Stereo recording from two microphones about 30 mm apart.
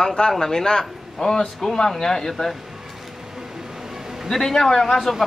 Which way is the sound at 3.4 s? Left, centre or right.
Centre.